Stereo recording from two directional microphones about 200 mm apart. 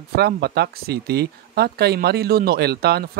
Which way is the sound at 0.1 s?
50° right (ahead or behind).